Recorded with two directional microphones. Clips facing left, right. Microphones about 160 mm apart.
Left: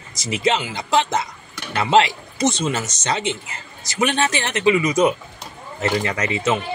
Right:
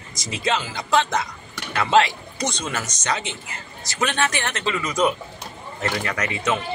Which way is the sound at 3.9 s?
20° left (ahead or behind).